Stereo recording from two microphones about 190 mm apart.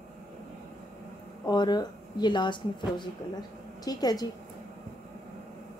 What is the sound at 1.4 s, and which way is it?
Speech, 20° left (ahead or behind).